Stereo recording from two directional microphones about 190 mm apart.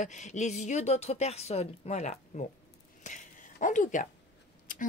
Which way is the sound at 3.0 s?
40° left (ahead or behind).